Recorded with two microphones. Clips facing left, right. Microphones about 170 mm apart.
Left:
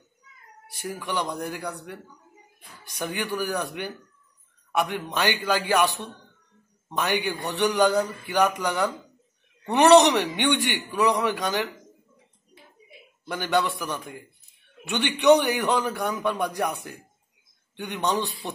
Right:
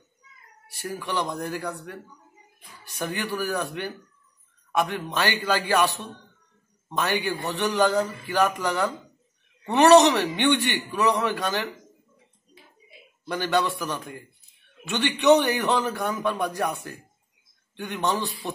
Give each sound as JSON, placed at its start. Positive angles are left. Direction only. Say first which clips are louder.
{"t": 0.9, "sound": "a man's voice", "louder": "right 1 dB", "side_deg": 15}
{"t": 6.9, "sound": "a man's voice", "louder": "even", "side_deg": 15}
{"t": 13.3, "sound": "a man's voice", "louder": "even", "side_deg": 15}